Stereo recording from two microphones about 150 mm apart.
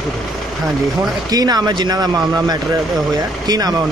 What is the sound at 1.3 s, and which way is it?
Speech, 25° right (ahead or behind).